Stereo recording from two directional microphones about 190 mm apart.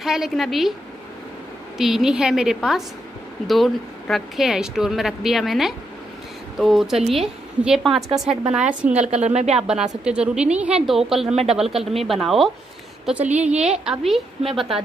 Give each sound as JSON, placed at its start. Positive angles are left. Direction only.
{"t": 0.0, "sound": "speech", "side_deg": 0}
{"t": 1.8, "sound": "speech", "side_deg": 0}
{"t": 9.1, "sound": "speech", "side_deg": -35}
{"t": 9.6, "sound": "a woman's voice", "side_deg": -5}